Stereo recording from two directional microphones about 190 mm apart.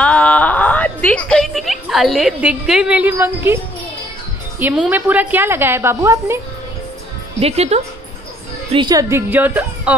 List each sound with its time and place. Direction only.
0.0 s a sound: 5° left (ahead or behind); by 3.5 s 10° right (ahead or behind)
4.6 s a woman's voice: 5° right (ahead or behind)
7.3 s speech: 35° right (ahead or behind)
8.7 s a woman's voice: 20° right (ahead or behind)